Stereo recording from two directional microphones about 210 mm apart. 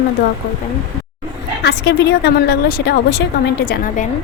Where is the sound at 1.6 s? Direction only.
55° left (ahead or behind).